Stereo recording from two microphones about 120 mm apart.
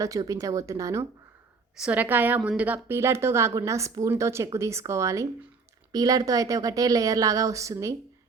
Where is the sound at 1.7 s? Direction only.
10° right (ahead or behind).